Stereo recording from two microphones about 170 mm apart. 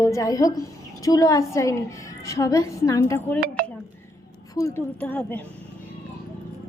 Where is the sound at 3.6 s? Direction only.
60° right (ahead or behind).